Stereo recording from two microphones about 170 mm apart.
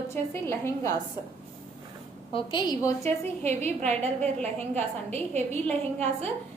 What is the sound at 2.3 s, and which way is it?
Speech, 25° left (ahead or behind).